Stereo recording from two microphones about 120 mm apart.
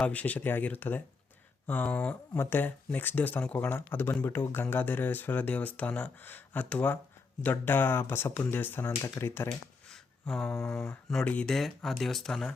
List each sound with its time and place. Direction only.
0.0 s speech: 10° left (ahead or behind)
9.9 s a sound: 5° left (ahead or behind)
10.4 s speech: 20° left (ahead or behind)
10.8 s speech: 5° left (ahead or behind)